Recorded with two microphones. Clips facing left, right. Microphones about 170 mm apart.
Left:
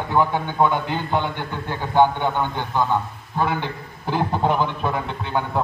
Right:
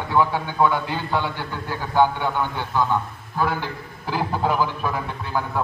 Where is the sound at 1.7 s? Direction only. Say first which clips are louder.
Left 2 dB; 20° left (ahead or behind).